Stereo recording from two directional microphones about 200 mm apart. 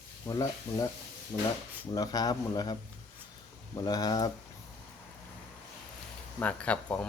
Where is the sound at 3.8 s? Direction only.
20° left (ahead or behind).